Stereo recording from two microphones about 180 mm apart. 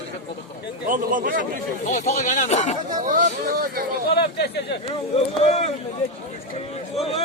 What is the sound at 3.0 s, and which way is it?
Speech, 45° right (ahead or behind).